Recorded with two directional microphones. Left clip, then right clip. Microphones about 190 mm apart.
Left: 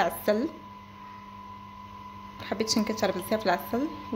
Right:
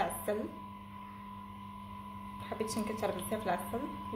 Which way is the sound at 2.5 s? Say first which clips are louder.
Left 9 dB; 50° left (ahead or behind).